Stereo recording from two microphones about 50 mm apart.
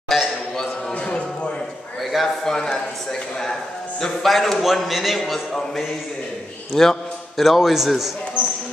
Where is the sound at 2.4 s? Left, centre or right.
Centre.